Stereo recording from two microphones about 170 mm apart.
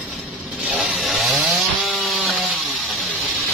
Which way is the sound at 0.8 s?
Centre (ahead or behind).